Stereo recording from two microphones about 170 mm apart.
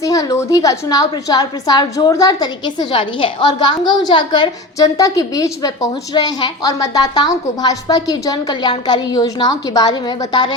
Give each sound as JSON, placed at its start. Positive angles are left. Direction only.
{"t": 0.0, "sound": "a woman's voice", "side_deg": 20}